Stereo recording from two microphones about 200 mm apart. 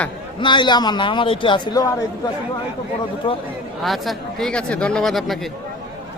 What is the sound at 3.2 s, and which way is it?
Speech, 25° left (ahead or behind).